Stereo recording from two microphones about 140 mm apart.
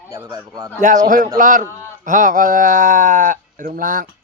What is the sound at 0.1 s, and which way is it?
Speech, 25° right (ahead or behind).